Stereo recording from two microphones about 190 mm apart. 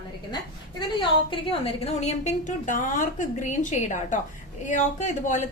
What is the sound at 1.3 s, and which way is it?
A woman's voice, 30° left (ahead or behind).